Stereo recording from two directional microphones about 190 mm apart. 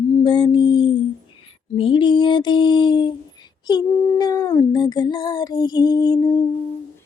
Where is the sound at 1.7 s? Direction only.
25° left (ahead or behind).